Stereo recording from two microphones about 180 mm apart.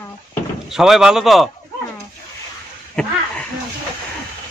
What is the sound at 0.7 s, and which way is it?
Speech, centre (ahead or behind).